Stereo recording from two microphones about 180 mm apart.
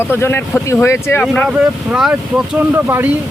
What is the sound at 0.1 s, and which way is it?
Speech, 10° left (ahead or behind).